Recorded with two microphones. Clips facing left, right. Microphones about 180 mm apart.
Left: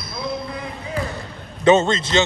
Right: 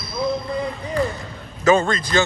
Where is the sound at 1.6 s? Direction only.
25° left (ahead or behind).